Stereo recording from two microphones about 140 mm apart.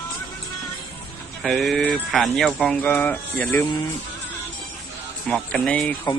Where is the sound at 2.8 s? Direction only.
10° left (ahead or behind).